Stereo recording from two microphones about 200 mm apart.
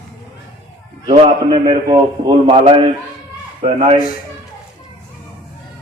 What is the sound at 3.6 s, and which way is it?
Speech, 40° right (ahead or behind).